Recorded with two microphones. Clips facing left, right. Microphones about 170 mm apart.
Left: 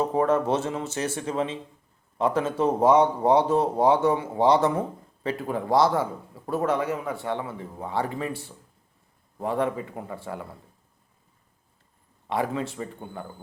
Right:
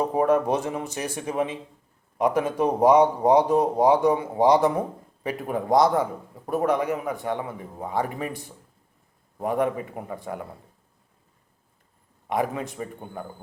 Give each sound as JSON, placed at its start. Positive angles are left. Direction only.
{"t": 0.0, "sound": "a man's voice", "side_deg": -15}
{"t": 12.3, "sound": "a man's voice", "side_deg": -15}